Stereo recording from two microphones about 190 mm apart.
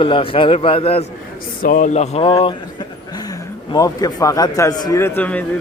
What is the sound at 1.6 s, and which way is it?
Speech, 45° left (ahead or behind).